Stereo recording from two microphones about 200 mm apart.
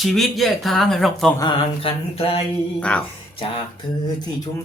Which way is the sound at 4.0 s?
20° left (ahead or behind).